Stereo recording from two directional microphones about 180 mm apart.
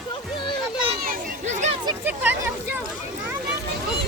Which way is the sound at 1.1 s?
40° right (ahead or behind).